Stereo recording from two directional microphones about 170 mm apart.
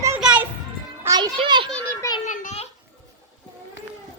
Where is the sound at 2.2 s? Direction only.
45° left (ahead or behind).